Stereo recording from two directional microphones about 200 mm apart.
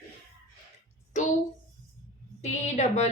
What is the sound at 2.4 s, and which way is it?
Speech, 35° left (ahead or behind).